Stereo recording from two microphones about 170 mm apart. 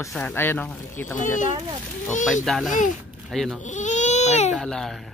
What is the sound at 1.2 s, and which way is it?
Speech, 50° left (ahead or behind).